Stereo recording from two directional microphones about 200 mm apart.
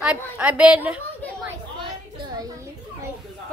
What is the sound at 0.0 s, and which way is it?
A woman's voice, 5° right (ahead or behind).